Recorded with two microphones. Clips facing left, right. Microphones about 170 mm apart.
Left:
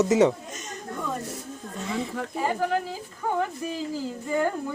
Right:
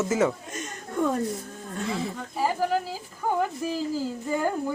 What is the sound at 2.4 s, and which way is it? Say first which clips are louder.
Speech: right 1 dB; 5° right (ahead or behind).